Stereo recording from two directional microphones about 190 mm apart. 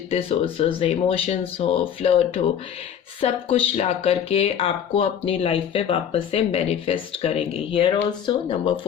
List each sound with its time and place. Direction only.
0.1 s speech: 30° left (ahead or behind)